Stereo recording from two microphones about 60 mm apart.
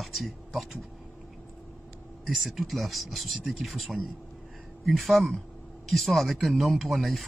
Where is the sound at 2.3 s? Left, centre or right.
Centre.